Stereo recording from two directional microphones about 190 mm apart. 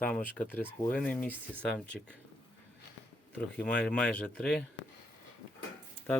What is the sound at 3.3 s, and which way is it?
Speech, 5° left (ahead or behind).